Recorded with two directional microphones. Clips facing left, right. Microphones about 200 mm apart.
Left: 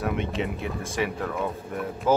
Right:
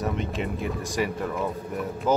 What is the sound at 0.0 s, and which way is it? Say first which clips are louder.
A man's voice: left 1 dB; centre (ahead or behind).